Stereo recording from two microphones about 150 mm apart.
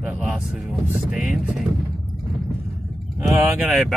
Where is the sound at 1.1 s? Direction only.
Centre (ahead or behind).